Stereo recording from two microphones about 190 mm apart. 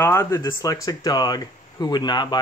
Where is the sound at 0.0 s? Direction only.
15° left (ahead or behind).